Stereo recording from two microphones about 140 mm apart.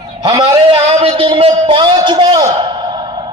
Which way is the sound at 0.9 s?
40° right (ahead or behind).